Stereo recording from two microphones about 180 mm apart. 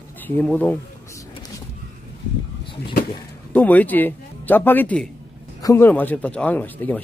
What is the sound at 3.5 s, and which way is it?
A man's voice, 10° left (ahead or behind).